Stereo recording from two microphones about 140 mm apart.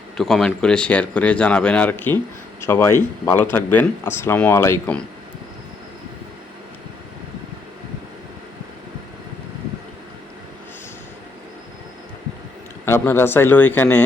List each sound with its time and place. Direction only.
0.2 s speech: centre (ahead or behind); by 4.9 s 20° left (ahead or behind)
12.8 s speech: 15° left (ahead or behind)